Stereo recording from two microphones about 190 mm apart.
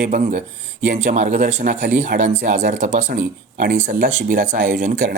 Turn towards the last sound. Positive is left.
turn(degrees=-45)  # may be behind; listen again after turning